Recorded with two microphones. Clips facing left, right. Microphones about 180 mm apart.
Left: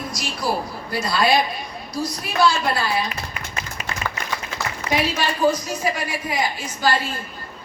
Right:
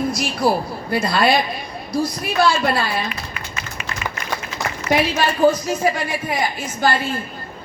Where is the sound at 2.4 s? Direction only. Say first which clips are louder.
Right 2 dB; 55° right (ahead or behind).